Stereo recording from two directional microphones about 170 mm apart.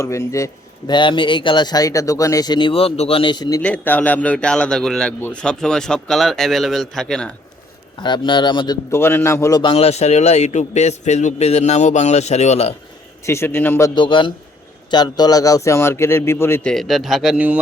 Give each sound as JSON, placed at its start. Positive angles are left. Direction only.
{"t": 0.0, "sound": "a man's voice", "side_deg": 15}
{"t": 3.6, "sound": "a man's voice", "side_deg": 10}
{"t": 7.9, "sound": "a man's voice", "side_deg": 25}
{"t": 13.2, "sound": "a man's voice", "side_deg": 15}
{"t": 13.9, "sound": "a man's voice", "side_deg": 30}
{"t": 16.7, "sound": "a man's voice", "side_deg": 0}